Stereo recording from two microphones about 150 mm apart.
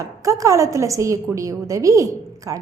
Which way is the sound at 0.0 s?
20° right (ahead or behind).